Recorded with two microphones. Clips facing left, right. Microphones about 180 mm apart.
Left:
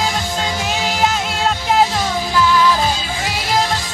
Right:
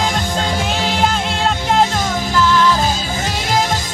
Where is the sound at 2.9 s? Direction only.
45° right (ahead or behind).